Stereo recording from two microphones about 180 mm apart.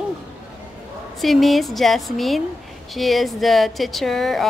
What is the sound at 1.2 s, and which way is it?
Speech, centre (ahead or behind).